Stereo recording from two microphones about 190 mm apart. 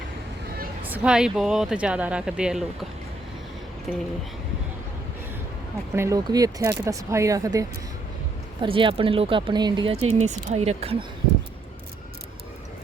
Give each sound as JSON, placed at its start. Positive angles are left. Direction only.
{"t": 0.9, "sound": "speech", "side_deg": -5}
{"t": 3.9, "sound": "speech", "side_deg": 0}
{"t": 5.9, "sound": "speech", "side_deg": -15}
{"t": 8.6, "sound": "speech", "side_deg": -25}